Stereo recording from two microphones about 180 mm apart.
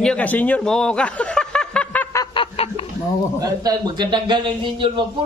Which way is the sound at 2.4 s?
30° left (ahead or behind).